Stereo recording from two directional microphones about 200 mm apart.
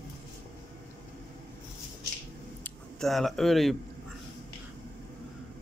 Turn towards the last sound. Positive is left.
turn(degrees=0)  # may be behind; listen again after turning